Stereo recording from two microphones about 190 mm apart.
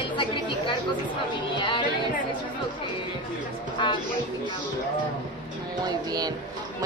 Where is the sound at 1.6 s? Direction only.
25° left (ahead or behind).